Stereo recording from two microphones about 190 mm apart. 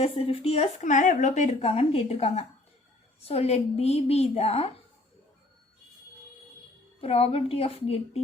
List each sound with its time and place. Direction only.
0.0 s a woman's voice: 30° left (ahead or behind)
7.0 s a woman's voice: 30° left (ahead or behind)